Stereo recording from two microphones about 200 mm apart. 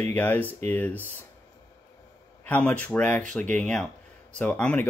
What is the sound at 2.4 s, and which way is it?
Speech, 10° left (ahead or behind).